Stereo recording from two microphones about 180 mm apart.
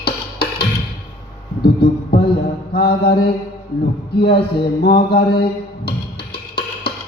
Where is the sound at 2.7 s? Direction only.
60° left (ahead or behind).